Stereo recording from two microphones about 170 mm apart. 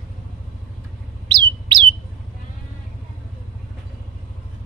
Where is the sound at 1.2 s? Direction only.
25° right (ahead or behind).